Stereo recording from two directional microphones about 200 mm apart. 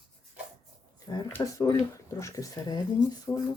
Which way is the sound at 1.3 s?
15° left (ahead or behind).